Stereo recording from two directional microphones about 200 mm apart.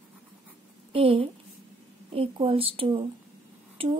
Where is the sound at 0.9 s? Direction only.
25° right (ahead or behind).